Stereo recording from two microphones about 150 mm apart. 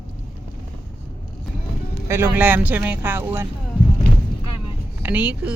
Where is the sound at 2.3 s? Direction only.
10° right (ahead or behind).